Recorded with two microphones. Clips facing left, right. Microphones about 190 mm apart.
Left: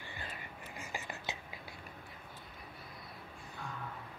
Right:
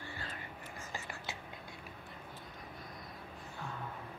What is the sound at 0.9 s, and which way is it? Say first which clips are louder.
Whispering: left 2 dB; 20° left (ahead or behind).